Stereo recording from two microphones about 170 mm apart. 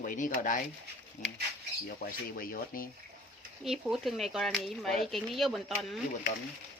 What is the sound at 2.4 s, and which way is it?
Speech, 55° left (ahead or behind).